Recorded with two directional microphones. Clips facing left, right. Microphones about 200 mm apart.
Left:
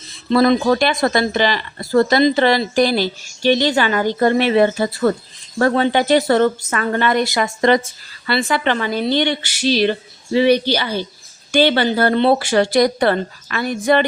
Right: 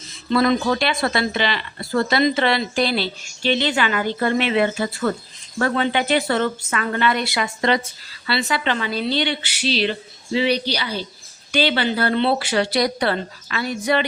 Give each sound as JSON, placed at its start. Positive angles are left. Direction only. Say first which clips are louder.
{"t": 0.3, "sound": "speech", "louder": "left 4 dB", "side_deg": 35}